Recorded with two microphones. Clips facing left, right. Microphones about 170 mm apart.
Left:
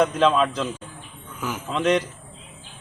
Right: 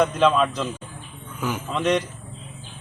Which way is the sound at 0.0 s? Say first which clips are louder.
Even; centre (ahead or behind).